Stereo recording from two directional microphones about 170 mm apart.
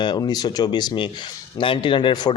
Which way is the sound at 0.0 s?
25° left (ahead or behind).